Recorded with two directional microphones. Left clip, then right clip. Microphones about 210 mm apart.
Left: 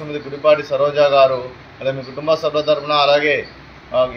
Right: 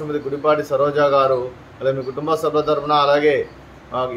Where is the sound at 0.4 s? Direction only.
25° right (ahead or behind).